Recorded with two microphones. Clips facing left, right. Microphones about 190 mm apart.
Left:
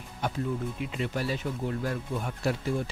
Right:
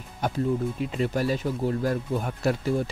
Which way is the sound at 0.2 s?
40° right (ahead or behind).